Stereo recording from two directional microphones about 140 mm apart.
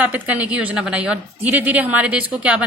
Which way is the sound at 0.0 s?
10° right (ahead or behind).